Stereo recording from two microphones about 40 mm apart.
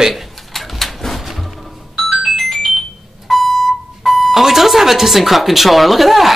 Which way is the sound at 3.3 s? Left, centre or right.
Centre.